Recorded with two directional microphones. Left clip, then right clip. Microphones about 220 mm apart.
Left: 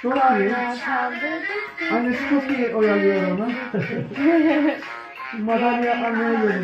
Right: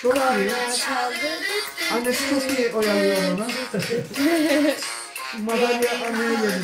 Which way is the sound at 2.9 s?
35° right (ahead or behind).